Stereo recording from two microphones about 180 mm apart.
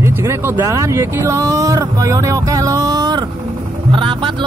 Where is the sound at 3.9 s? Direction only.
30° right (ahead or behind).